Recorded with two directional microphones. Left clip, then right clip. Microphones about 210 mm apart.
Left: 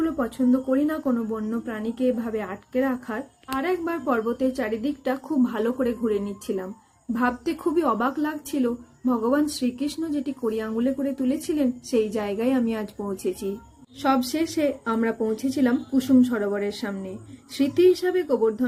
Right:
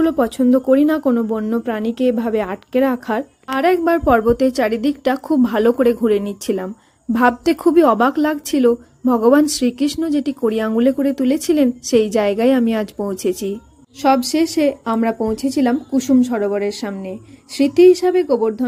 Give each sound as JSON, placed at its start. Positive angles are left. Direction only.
{"t": 0.0, "sound": "a woman's voice", "side_deg": -45}